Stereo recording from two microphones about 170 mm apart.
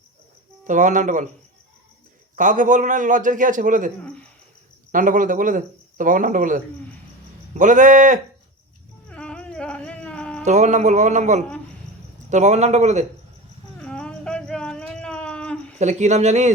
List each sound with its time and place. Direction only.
0.7 s speech: 50° right (ahead or behind)
2.3 s speech: 50° right (ahead or behind)
9.0 s a sound: 5° left (ahead or behind)
10.4 s speech: 45° right (ahead or behind)
13.7 s a sound: 5° left (ahead or behind)
15.8 s speech: 45° right (ahead or behind)